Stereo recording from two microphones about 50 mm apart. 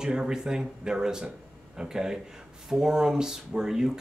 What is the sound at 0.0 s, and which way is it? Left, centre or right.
Speech, centre.